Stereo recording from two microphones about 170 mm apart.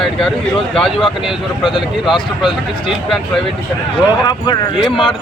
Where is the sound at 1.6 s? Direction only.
25° left (ahead or behind).